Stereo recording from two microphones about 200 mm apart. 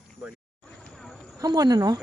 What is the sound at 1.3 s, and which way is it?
Speech, 20° right (ahead or behind).